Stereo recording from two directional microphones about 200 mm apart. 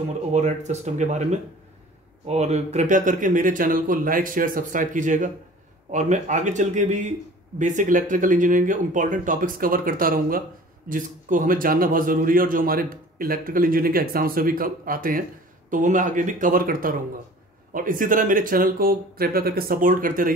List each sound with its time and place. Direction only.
0.3 s a man's voice: 35° right (ahead or behind)